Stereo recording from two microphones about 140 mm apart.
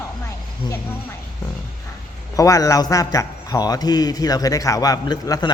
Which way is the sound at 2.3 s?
25° left (ahead or behind).